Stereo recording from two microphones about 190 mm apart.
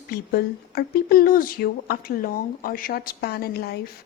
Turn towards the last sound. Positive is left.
turn(degrees=55)  # may be behind; listen again after turning